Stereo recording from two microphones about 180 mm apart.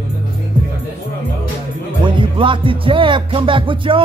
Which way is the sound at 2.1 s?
30° right (ahead or behind).